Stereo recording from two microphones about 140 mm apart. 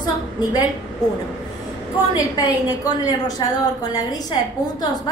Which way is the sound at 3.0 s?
30° left (ahead or behind).